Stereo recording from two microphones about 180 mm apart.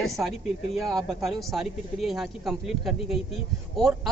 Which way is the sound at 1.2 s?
Centre (ahead or behind).